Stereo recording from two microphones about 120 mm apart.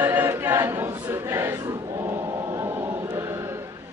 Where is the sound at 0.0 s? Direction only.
15° right (ahead or behind).